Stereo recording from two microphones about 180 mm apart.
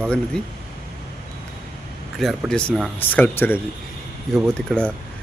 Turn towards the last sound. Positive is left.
turn(degrees=5)  # may be behind; listen again after turning